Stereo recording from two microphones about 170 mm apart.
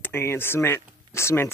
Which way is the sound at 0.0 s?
15° left (ahead or behind).